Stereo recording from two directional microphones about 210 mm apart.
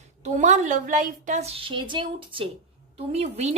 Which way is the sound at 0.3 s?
35° right (ahead or behind).